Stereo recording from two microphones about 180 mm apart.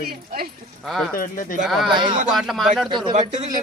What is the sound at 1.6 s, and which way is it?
A man's voice, centre (ahead or behind).